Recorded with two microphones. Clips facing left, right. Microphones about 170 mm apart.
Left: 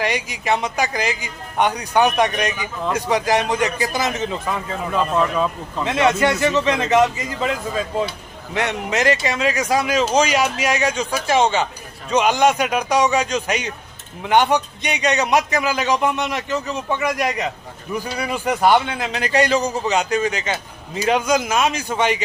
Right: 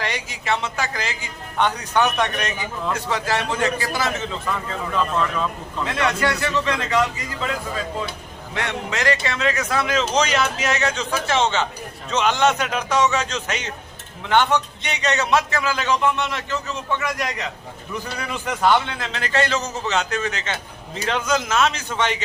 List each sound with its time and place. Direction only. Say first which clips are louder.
0.0 s a man's voice: left 5 dB; 15° left (ahead or behind)
8.5 s a man's voice: left 5 dB; 20° left (ahead or behind)